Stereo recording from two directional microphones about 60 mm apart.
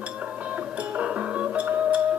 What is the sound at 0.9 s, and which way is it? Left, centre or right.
Music, centre.